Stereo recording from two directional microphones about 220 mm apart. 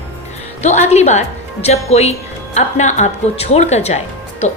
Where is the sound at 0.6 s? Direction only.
30° left (ahead or behind).